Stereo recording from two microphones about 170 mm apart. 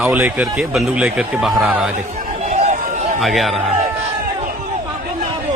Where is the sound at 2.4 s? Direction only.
45° right (ahead or behind).